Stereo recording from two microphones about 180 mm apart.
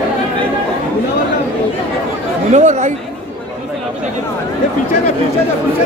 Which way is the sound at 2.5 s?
40° right (ahead or behind).